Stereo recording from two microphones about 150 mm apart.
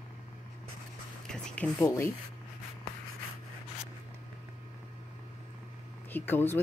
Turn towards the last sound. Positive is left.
turn(degrees=15)  # may be behind; listen again after turning